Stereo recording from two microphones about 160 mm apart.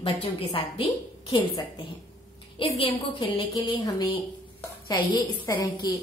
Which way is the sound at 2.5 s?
30° left (ahead or behind).